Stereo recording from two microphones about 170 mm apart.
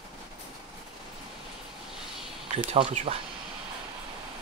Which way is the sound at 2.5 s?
40° right (ahead or behind).